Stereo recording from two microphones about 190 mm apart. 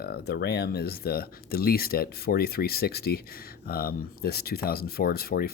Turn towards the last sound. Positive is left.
turn(degrees=50)  # may be behind; listen again after turning